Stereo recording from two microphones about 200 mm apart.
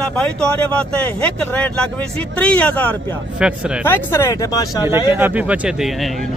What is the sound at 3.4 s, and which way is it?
Speech, 5° right (ahead or behind).